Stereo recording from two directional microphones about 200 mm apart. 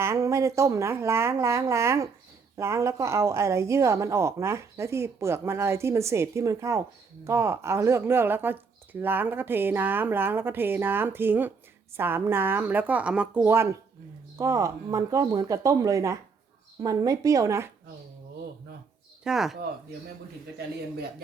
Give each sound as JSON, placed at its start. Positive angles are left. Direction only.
{"t": 0.0, "sound": "speech", "side_deg": -15}
{"t": 19.2, "sound": "speech", "side_deg": 0}